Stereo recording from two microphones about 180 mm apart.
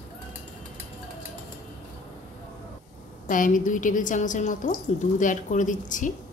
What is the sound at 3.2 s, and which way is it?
A woman's voice, 45° left (ahead or behind).